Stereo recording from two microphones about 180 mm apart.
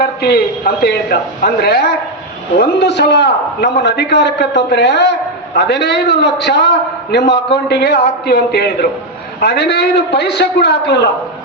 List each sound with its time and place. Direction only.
0.0 s a man's voice: 60° left (ahead or behind)